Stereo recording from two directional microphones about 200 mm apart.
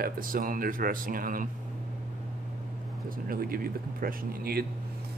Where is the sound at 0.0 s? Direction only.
45° right (ahead or behind).